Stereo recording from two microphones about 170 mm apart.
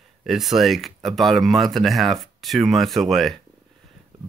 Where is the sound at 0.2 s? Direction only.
Centre (ahead or behind).